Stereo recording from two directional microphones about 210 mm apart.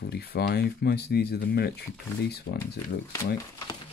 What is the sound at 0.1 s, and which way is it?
Speech, 50° left (ahead or behind).